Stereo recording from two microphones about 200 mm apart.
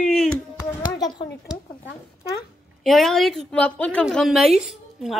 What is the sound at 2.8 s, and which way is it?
A woman's voice, centre (ahead or behind).